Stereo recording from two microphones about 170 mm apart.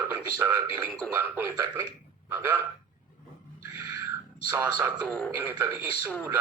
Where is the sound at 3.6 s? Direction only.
90° left.